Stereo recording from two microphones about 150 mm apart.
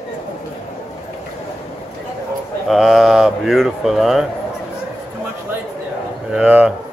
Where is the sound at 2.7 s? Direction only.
Centre (ahead or behind).